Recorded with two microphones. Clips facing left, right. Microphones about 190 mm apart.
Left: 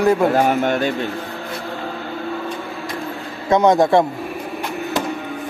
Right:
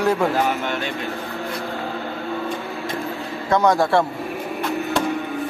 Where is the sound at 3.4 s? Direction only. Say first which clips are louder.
Left 4 dB; 20° left (ahead or behind).